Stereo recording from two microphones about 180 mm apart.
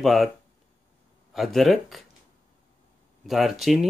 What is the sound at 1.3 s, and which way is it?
Speech, centre (ahead or behind).